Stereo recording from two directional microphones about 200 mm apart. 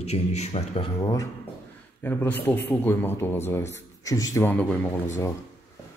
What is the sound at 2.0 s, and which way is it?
A man's voice, 10° left (ahead or behind).